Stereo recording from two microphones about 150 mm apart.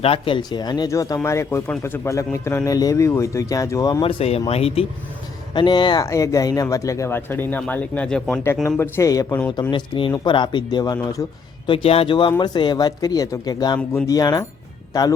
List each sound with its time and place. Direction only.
0.0 s speech: 35° left (ahead or behind); by 4.0 s 20° left (ahead or behind)
4.0 s speech: 40° left (ahead or behind)
5.5 s speech: 30° left (ahead or behind); by 8.4 s 5° left (ahead or behind)
8.8 s speech: 20° left (ahead or behind)